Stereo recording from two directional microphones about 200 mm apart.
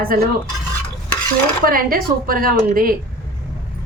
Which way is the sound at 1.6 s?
45° right (ahead or behind).